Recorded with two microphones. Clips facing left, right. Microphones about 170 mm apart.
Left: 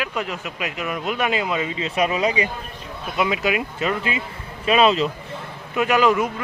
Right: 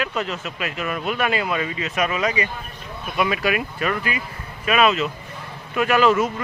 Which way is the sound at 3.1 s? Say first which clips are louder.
Even; 20° left (ahead or behind).